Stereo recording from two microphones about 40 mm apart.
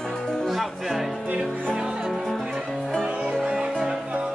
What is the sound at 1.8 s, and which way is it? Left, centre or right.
Speech, centre.